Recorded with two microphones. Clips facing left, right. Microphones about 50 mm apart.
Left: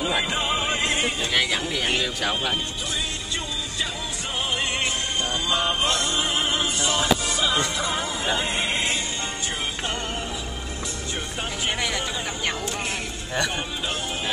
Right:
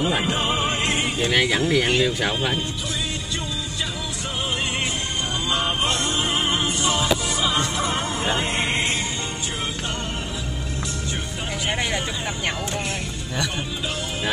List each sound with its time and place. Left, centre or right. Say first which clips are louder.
0.0 s music: right 2 dB; right
1.3 s speech: right 4 dB; right
5.5 s music: right 1 dB; centre; by 7.0 s right
7.8 s speech: right 2 dB; right